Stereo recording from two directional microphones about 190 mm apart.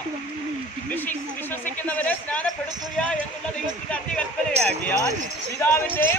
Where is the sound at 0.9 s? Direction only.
10° left (ahead or behind).